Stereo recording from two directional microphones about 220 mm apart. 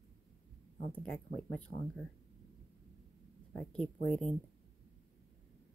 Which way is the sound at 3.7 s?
5° left (ahead or behind).